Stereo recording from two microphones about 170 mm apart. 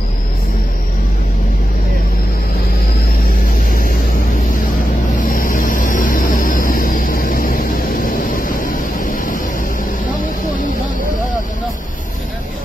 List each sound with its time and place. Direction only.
5.2 s vehicle: 55° left (ahead or behind)